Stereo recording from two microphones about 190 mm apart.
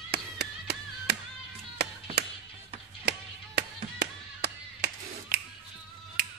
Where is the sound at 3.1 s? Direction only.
60° right (ahead or behind).